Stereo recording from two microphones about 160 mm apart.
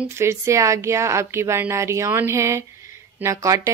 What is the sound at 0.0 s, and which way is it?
A woman's voice, 15° right (ahead or behind).